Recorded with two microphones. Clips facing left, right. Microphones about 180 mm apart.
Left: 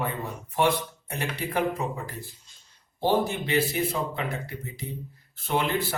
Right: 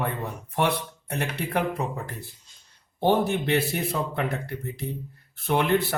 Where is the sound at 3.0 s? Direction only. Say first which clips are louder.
Right 2 dB; 60° right (ahead or behind).